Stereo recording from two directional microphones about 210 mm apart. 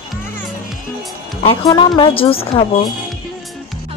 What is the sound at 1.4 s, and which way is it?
Speech, 25° left (ahead or behind).